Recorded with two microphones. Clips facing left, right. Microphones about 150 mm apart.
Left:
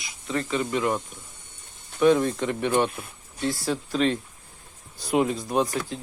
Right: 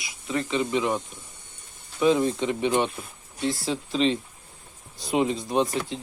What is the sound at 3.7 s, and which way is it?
Speech, 25° right (ahead or behind).